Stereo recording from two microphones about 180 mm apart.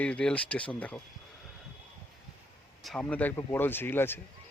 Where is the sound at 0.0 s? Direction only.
5° left (ahead or behind).